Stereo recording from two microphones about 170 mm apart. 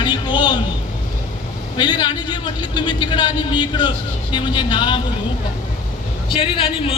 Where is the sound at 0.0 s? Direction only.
25° left (ahead or behind).